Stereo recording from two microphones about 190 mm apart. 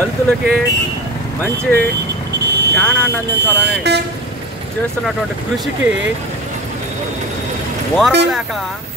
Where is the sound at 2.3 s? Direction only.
60° right (ahead or behind).